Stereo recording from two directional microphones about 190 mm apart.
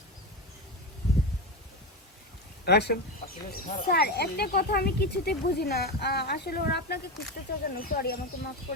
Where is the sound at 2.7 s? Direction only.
60° left (ahead or behind).